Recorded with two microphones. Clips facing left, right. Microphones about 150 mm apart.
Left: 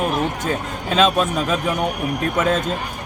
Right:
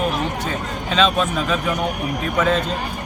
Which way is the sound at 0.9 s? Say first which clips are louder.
Left 2 dB; 45° left (ahead or behind).